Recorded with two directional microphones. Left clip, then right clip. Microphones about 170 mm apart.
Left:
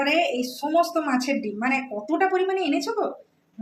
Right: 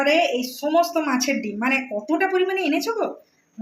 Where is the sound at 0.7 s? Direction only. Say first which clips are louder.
Right 2 dB; 20° right (ahead or behind).